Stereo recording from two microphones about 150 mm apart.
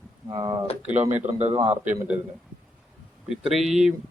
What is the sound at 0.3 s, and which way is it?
Speech, 30° right (ahead or behind).